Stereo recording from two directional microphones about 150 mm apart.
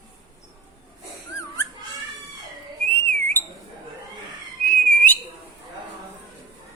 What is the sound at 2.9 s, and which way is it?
Whistle, 15° left (ahead or behind).